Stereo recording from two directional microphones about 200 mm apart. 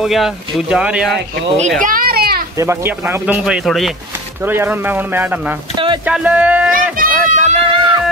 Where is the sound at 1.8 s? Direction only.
45° right (ahead or behind).